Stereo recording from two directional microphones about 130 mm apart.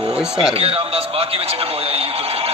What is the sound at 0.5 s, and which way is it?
A man's voice, 45° right (ahead or behind).